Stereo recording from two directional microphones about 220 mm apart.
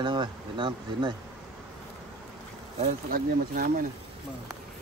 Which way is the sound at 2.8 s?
40° right (ahead or behind).